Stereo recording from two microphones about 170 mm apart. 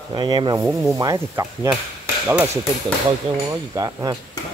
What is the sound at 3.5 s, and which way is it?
Speech, 20° right (ahead or behind).